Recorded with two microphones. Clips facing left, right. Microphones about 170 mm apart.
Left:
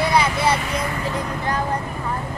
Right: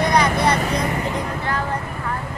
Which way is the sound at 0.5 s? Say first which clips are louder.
Right 3 dB; 35° right (ahead or behind).